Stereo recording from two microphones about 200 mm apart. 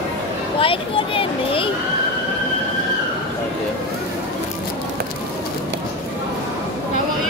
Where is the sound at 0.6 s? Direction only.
25° left (ahead or behind).